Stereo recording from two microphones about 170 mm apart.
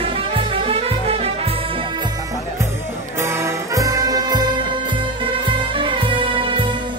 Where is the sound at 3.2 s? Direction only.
15° right (ahead or behind).